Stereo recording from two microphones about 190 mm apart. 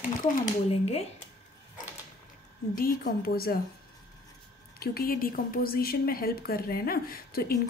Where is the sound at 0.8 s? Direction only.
35° left (ahead or behind).